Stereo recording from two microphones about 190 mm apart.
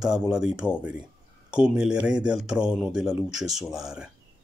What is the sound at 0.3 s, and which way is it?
Speech, 5° right (ahead or behind).